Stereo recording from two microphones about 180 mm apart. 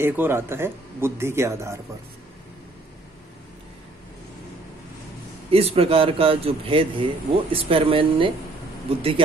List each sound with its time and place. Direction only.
0.0 s speech: 10° right (ahead or behind)
5.5 s speech: 35° right (ahead or behind)